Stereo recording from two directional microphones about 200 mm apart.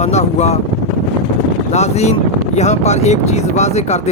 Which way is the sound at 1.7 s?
35° left (ahead or behind).